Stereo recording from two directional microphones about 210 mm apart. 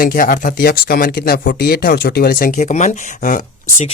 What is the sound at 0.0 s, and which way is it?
Speech, 45° left (ahead or behind).